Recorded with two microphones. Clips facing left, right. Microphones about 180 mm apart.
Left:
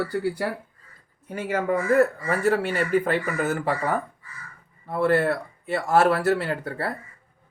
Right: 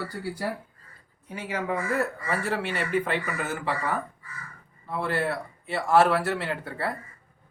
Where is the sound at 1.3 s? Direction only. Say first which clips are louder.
Left 5 dB; 50° left (ahead or behind).